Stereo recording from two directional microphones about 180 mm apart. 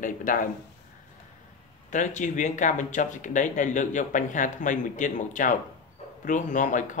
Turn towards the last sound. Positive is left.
turn(degrees=45)  # may be behind; listen again after turning